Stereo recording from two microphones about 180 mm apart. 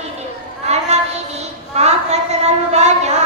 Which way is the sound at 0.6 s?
35° right (ahead or behind).